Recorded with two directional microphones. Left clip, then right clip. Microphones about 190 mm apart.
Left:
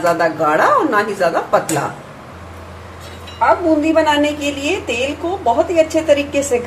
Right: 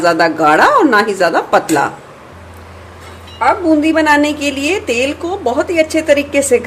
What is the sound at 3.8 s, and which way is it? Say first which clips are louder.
A woman's voice: right 3 dB; 40° right (ahead or behind).